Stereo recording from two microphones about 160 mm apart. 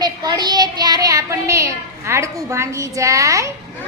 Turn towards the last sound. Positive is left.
turn(degrees=-20)  # may be behind; listen again after turning